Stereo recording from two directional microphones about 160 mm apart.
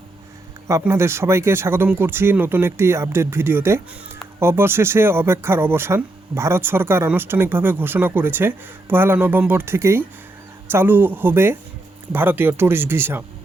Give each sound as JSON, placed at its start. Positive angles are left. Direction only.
{"t": 0.7, "sound": "speech", "side_deg": -15}